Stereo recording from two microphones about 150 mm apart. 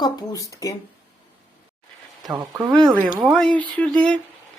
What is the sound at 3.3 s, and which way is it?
Speech, 5° left (ahead or behind).